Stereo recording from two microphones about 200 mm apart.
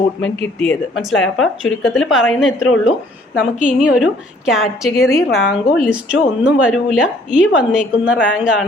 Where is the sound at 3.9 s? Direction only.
5° right (ahead or behind).